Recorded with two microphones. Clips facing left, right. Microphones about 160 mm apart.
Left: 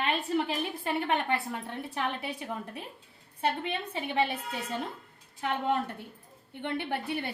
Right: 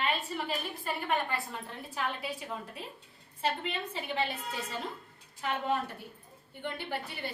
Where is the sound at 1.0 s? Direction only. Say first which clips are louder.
Even; 65° left (ahead or behind).